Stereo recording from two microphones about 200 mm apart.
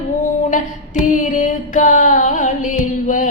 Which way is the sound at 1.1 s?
40° left (ahead or behind).